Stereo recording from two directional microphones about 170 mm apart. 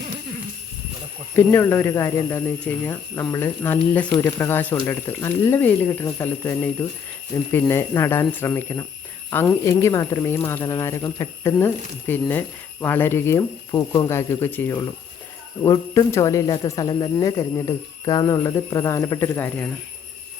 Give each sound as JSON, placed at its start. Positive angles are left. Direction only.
{"t": 1.4, "sound": "speech", "side_deg": 10}